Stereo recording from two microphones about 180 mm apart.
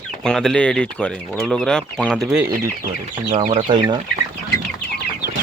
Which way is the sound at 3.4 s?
30° right (ahead or behind).